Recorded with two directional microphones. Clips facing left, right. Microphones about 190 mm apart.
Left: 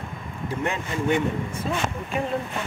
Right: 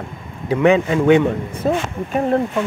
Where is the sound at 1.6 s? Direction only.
50° right (ahead or behind).